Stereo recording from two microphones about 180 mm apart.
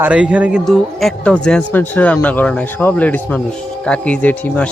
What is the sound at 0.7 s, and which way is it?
A man's voice, 5° left (ahead or behind).